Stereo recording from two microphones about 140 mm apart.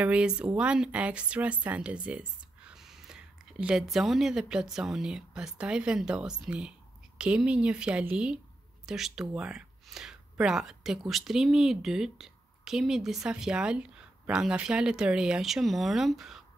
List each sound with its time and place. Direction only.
0.0 s speech: 5° right (ahead or behind)